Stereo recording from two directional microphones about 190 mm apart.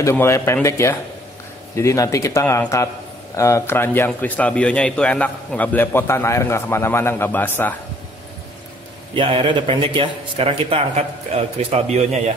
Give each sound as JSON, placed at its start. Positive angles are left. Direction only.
{"t": 0.0, "sound": "a man's voice", "side_deg": 15}
{"t": 9.1, "sound": "a man's voice", "side_deg": -30}